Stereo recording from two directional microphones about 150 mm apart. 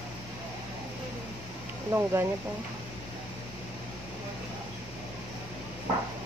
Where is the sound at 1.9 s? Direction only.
15° right (ahead or behind).